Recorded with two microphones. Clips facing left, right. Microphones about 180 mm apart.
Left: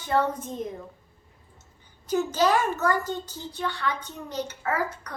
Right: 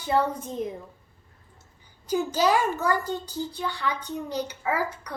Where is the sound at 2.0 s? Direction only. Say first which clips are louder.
Even; 10° right (ahead or behind).